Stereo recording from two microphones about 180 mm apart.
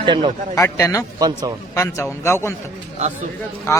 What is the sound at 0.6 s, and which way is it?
Speech, 15° left (ahead or behind).